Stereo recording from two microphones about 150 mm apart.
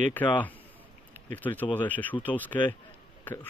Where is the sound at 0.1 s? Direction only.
10° left (ahead or behind).